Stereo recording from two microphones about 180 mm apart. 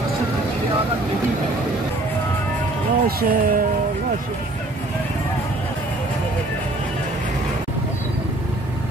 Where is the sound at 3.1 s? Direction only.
55° right (ahead or behind).